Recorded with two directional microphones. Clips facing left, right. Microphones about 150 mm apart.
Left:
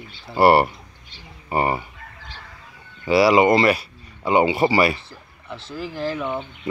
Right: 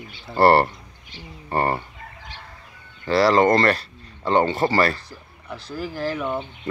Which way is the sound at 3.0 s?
10° left (ahead or behind).